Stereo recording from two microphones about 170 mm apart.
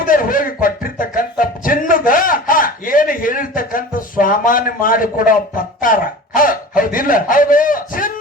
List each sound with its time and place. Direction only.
0.0 s music: 55° left (ahead or behind)